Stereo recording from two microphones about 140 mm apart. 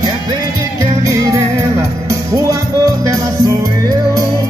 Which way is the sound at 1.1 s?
25° right (ahead or behind).